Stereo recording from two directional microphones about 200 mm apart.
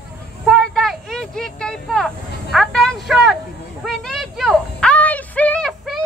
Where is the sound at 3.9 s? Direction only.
Centre (ahead or behind).